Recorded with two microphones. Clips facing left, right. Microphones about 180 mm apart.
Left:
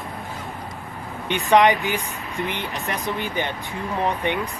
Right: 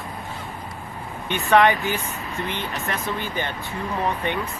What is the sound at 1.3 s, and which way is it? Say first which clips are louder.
Speech: left 1 dB; 15° left (ahead or behind).